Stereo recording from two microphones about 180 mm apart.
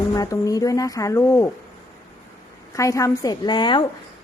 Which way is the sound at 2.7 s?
15° left (ahead or behind).